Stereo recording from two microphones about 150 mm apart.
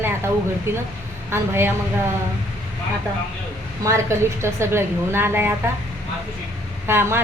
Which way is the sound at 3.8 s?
20° right (ahead or behind).